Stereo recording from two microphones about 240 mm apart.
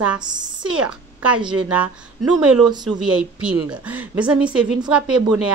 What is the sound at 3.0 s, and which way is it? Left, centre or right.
A woman's voice, centre.